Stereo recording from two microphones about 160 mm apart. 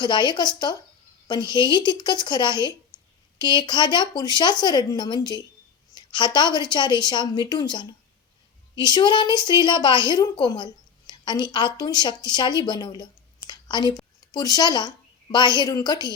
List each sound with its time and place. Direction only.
0.0 s a woman's voice: 25° left (ahead or behind)
2.9 s a sound: 25° left (ahead or behind)
3.3 s a woman's voice: 30° left (ahead or behind)